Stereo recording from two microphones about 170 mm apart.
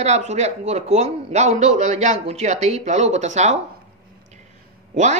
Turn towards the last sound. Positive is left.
turn(degrees=-45)  # may be behind; listen again after turning